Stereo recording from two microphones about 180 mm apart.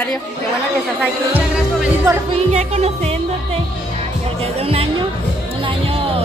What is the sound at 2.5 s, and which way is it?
Music, 35° right (ahead or behind).